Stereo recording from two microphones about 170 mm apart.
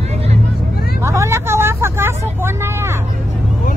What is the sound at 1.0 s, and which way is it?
Vehicle, 15° right (ahead or behind).